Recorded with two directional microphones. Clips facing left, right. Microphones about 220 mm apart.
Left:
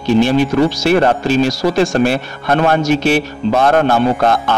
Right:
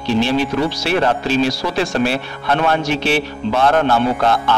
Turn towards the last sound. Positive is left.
turn(degrees=45)  # may be behind; listen again after turning